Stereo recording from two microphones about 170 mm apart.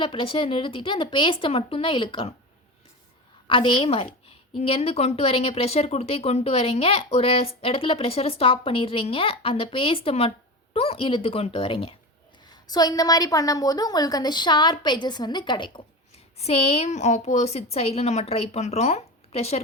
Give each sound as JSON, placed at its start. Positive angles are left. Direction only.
{"t": 0.0, "sound": "a woman's voice", "side_deg": 30}
{"t": 3.4, "sound": "a woman's voice", "side_deg": 30}
{"t": 12.6, "sound": "a woman's voice", "side_deg": 25}